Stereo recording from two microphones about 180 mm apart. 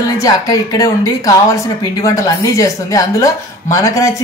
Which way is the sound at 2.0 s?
20° left (ahead or behind).